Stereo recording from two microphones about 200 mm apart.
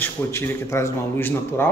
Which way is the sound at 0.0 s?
10° left (ahead or behind).